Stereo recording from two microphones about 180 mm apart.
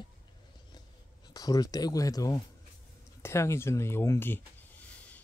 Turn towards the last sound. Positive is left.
turn(degrees=10)  # may be behind; listen again after turning